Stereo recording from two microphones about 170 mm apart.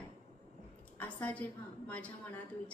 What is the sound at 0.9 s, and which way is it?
A woman's voice, 10° left (ahead or behind).